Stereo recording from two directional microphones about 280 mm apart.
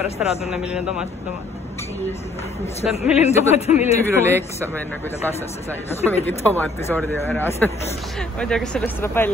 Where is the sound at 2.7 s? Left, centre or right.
Left.